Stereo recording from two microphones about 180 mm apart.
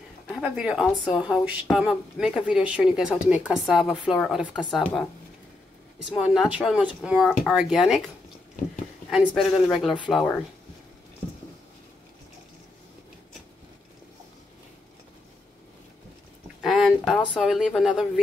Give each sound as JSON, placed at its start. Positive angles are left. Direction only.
{"t": 0.4, "sound": "speech", "side_deg": -5}
{"t": 9.1, "sound": "speech", "side_deg": 0}
{"t": 16.6, "sound": "a sound", "side_deg": 0}
{"t": 17.4, "sound": "speech", "side_deg": -5}